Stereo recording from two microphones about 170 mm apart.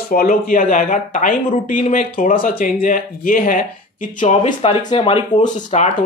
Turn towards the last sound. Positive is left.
turn(degrees=45)  # may be behind; listen again after turning